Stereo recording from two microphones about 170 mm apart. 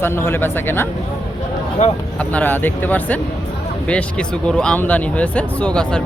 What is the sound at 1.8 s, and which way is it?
Speech, 45° left (ahead or behind).